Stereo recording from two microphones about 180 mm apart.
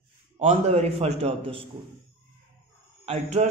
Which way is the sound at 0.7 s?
35° right (ahead or behind).